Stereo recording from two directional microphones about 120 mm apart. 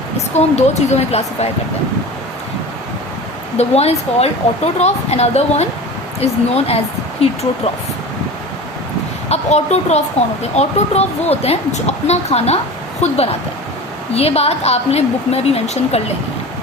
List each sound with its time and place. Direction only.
0.3 s speech: 70° left (ahead or behind)
3.6 s speech: 60° left (ahead or behind)
9.3 s speech: 70° left (ahead or behind)